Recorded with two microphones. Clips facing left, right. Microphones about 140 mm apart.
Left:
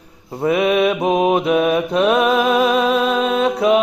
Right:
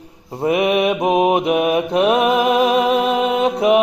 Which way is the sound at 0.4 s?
20° right (ahead or behind).